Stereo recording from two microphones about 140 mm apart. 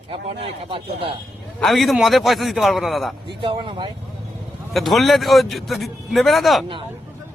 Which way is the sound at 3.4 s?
35° right (ahead or behind).